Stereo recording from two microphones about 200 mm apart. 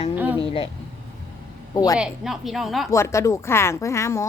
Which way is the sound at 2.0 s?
Centre (ahead or behind).